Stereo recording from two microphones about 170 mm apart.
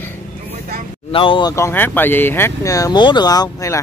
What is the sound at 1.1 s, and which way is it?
Speech, 30° left (ahead or behind).